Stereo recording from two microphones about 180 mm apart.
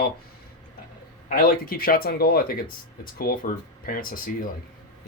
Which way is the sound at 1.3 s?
55° left (ahead or behind).